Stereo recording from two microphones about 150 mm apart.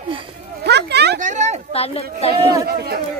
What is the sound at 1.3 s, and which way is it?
Speech, 50° right (ahead or behind).